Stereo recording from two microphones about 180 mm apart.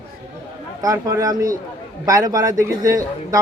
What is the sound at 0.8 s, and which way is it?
Speech, 20° right (ahead or behind).